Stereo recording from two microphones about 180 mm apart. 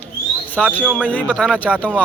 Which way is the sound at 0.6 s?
5° left (ahead or behind).